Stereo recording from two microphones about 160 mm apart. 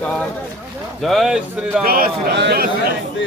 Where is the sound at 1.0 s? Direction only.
Centre (ahead or behind).